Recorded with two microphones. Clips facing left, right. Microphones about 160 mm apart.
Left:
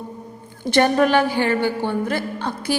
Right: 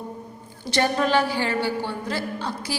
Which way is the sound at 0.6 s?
55° left (ahead or behind).